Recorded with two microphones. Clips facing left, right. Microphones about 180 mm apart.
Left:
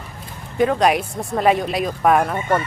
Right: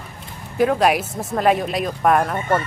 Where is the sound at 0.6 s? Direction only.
Centre (ahead or behind).